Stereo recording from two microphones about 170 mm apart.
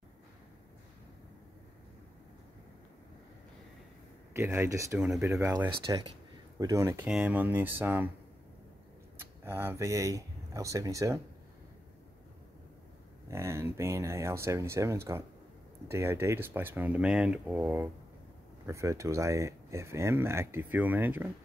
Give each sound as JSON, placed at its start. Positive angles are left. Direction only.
{"t": 4.3, "sound": "speech", "side_deg": -15}
{"t": 4.9, "sound": "speech", "side_deg": -5}
{"t": 5.2, "sound": "speech", "side_deg": -20}
{"t": 9.2, "sound": "speech", "side_deg": -15}
{"t": 13.3, "sound": "speech", "side_deg": -15}